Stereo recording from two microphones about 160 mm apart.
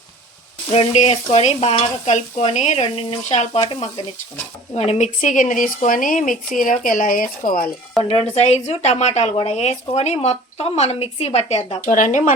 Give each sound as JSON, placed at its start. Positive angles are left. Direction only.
{"t": 0.7, "sound": "speech", "side_deg": 45}
{"t": 4.7, "sound": "speech", "side_deg": 40}
{"t": 8.0, "sound": "speech", "side_deg": 40}
{"t": 11.8, "sound": "speech", "side_deg": 55}